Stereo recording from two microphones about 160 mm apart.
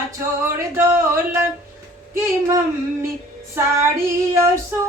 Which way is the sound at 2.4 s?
15° right (ahead or behind).